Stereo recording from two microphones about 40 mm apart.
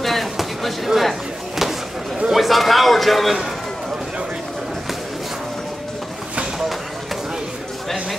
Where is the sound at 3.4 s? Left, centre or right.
Centre.